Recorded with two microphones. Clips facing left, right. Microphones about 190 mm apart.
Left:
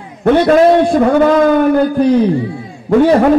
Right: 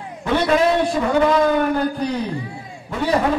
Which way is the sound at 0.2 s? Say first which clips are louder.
Left 9 dB; 55° left (ahead or behind).